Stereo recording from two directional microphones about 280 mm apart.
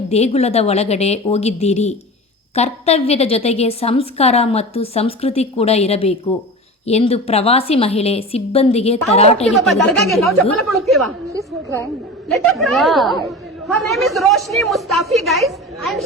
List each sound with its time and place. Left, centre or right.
0.1 s a woman's voice: left
9.5 s a woman's voice: centre
12.3 s a woman's voice: centre